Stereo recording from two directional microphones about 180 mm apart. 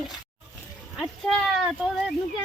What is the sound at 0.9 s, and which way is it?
Speech, centre (ahead or behind).